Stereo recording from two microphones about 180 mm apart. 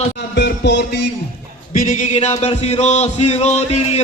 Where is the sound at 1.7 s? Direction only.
45° left (ahead or behind).